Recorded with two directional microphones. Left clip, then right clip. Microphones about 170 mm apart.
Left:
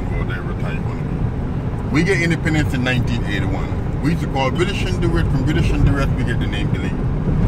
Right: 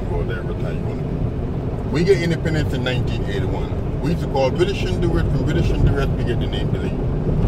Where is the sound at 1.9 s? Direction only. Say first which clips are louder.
Even; 20° left (ahead or behind).